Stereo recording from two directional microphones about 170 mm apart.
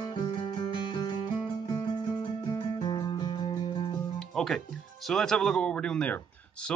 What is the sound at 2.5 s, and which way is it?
Music, 25° left (ahead or behind).